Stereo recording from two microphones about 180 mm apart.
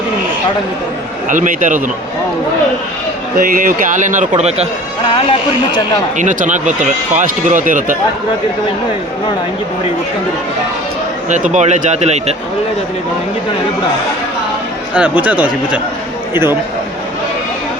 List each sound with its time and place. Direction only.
1.3 s speech: 45° right (ahead or behind)
3.3 s speech: 50° right (ahead or behind)
6.1 s speech: 45° right (ahead or behind)
11.3 s speech: 40° right (ahead or behind)
14.9 s speech: 10° right (ahead or behind)